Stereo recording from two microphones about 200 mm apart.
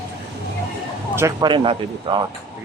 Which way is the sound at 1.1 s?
20° right (ahead or behind).